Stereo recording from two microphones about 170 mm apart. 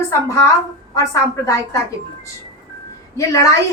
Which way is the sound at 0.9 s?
15° left (ahead or behind).